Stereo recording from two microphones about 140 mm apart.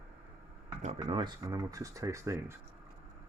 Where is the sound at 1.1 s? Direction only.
40° right (ahead or behind).